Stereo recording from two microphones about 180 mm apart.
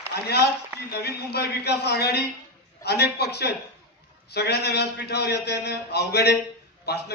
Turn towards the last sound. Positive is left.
turn(degrees=65)  # may be behind; listen again after turning